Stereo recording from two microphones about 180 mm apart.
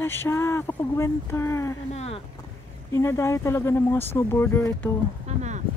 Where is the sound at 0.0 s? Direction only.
10° left (ahead or behind).